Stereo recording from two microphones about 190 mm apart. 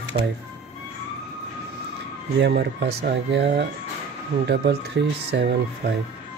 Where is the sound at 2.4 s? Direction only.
60° right (ahead or behind).